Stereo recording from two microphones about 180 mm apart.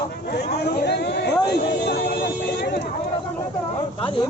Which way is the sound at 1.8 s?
65° left (ahead or behind).